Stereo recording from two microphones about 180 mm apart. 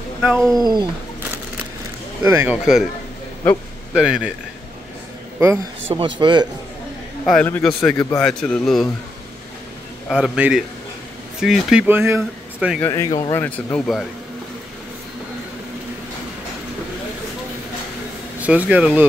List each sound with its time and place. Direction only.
0.2 s a man's voice: centre (ahead or behind)
2.2 s speech: 10° right (ahead or behind)
3.9 s a man's voice: 5° right (ahead or behind)
5.9 s a man's voice: 25° right (ahead or behind)
7.2 s a man's voice: 10° left (ahead or behind)
10.0 s a man's voice: 5° right (ahead or behind)
12.8 s speech: 15° left (ahead or behind)
18.4 s speech: 10° right (ahead or behind)